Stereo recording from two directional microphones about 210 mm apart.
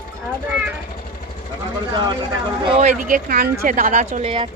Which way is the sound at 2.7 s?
30° right (ahead or behind).